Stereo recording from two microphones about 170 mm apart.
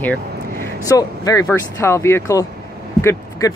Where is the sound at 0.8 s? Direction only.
20° left (ahead or behind).